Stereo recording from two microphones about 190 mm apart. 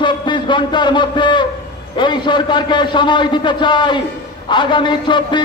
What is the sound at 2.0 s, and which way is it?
A man's voice, 25° left (ahead or behind).